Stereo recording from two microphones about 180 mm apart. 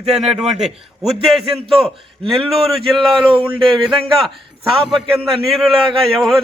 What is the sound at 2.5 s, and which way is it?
A man's voice, centre (ahead or behind).